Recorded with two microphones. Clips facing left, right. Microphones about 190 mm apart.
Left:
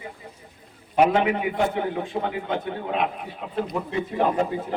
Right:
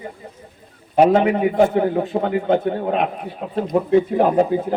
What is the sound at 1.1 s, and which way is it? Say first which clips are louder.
A man's voice: right 6 dB; 45° right (ahead or behind).